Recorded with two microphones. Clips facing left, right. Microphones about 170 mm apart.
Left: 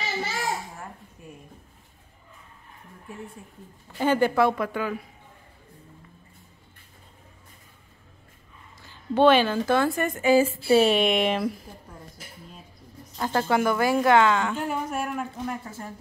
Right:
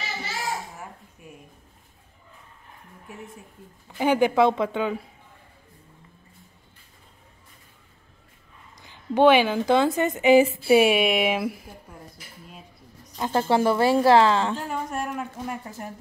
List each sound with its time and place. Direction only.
4.0 s speech: 15° right (ahead or behind)
8.8 s a woman's voice: 15° right (ahead or behind)
13.2 s speech: 20° right (ahead or behind)
14.6 s speech: 10° left (ahead or behind)
15.3 s a woman's voice: 10° right (ahead or behind)